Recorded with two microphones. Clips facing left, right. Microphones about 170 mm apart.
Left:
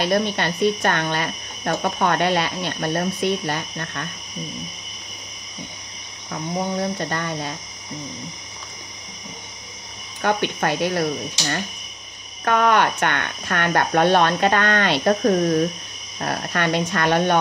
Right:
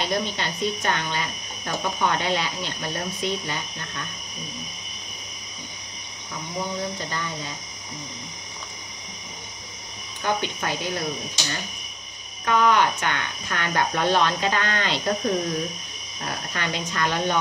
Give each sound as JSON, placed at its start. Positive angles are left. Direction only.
{"t": 0.0, "sound": "speech", "side_deg": 60}
{"t": 6.8, "sound": "speech", "side_deg": 60}
{"t": 10.2, "sound": "speech", "side_deg": 65}